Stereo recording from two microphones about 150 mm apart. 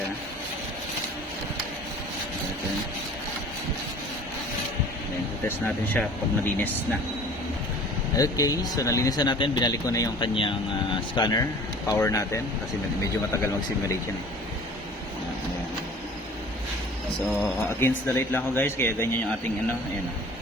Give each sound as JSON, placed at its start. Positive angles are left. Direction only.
{"t": 5.5, "sound": "speech", "side_deg": 10}
{"t": 8.1, "sound": "speech", "side_deg": 25}
{"t": 17.2, "sound": "speech", "side_deg": 15}